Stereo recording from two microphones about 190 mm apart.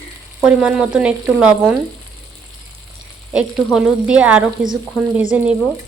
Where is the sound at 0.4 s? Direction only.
5° right (ahead or behind).